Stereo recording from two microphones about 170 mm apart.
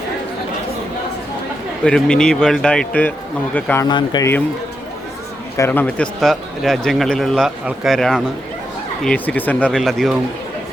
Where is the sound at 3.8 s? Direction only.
25° left (ahead or behind).